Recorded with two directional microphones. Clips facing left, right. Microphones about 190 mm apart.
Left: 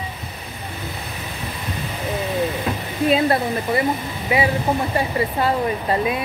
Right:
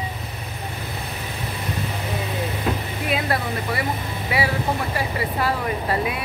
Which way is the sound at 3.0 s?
25° left (ahead or behind).